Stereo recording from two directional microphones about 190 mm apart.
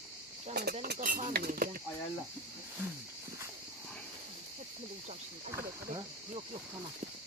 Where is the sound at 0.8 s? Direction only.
45° right (ahead or behind).